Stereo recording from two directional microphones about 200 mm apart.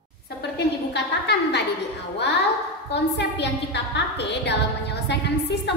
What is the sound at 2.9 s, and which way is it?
A woman's voice, 60° left (ahead or behind).